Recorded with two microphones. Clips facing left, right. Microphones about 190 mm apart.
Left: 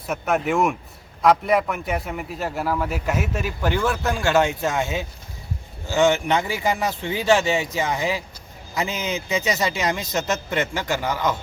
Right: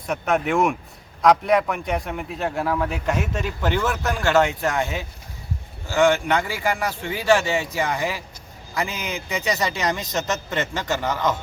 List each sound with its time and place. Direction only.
0.1 s a man's voice: centre (ahead or behind)